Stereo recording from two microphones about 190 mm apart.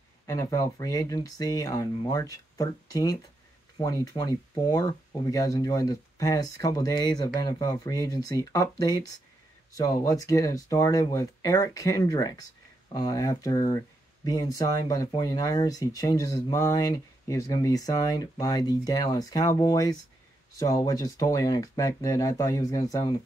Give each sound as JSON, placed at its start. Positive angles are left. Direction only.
{"t": 0.3, "sound": "speech", "side_deg": 15}